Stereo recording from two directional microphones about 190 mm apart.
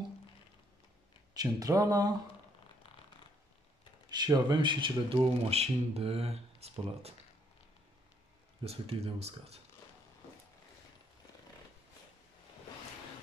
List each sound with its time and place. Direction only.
1.3 s speech: 20° right (ahead or behind)
4.1 s speech: 20° right (ahead or behind)
8.6 s speech: 30° right (ahead or behind)